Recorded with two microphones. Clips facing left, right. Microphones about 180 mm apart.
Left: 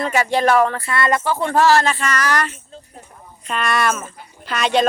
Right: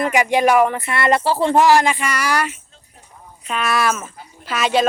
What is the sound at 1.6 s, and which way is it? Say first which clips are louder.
Speech: even; 15° right (ahead or behind).